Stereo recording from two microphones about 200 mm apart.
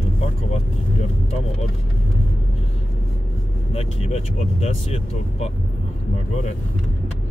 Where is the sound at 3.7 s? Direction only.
30° left (ahead or behind).